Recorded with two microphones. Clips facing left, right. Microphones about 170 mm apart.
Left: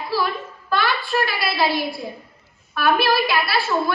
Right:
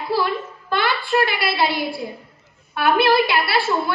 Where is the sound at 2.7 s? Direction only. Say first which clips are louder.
Right 2 dB; 25° right (ahead or behind).